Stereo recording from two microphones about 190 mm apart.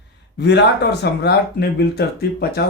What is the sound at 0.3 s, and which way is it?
A man's voice, 60° left (ahead or behind).